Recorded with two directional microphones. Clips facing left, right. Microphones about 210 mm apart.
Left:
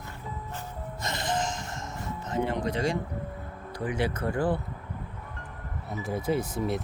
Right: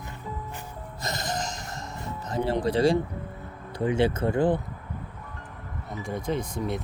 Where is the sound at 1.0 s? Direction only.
40° right (ahead or behind).